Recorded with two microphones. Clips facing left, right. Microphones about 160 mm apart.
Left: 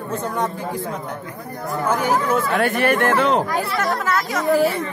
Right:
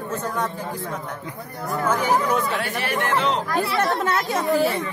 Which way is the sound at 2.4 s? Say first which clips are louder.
Left 7 dB; 50° left (ahead or behind).